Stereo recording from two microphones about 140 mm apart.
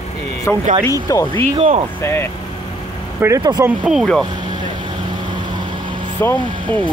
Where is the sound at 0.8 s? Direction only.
25° left (ahead or behind).